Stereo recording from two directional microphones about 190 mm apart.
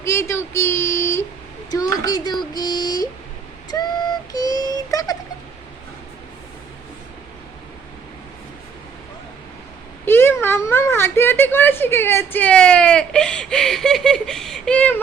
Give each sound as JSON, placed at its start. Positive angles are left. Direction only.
{"t": 0.0, "sound": "speech", "side_deg": 15}
{"t": 1.7, "sound": "child singing", "side_deg": 20}
{"t": 3.7, "sound": "a sound", "side_deg": 20}
{"t": 10.1, "sound": "speech", "side_deg": 10}